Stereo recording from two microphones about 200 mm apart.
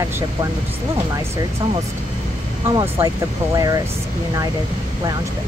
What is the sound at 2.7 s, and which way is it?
Speech, 15° right (ahead or behind).